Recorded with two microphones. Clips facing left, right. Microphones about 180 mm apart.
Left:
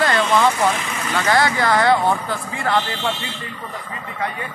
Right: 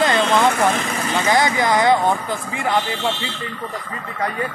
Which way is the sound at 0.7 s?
40° right (ahead or behind).